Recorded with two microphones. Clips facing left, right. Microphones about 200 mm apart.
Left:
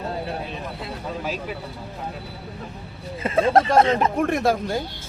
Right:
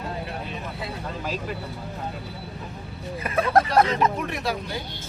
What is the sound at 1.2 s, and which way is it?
Speech, 5° left (ahead or behind).